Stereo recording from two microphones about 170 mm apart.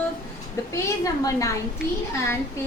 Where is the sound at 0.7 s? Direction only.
20° left (ahead or behind).